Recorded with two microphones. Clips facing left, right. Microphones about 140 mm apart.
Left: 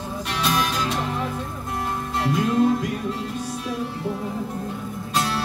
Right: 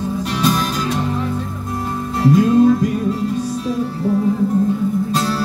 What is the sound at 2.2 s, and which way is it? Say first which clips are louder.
Music: right 8 dB; 40° right (ahead or behind).